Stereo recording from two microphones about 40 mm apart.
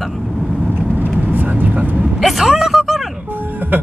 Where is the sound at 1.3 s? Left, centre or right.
Right.